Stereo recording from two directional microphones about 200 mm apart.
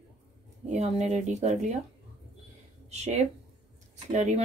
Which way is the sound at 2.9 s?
35° right (ahead or behind).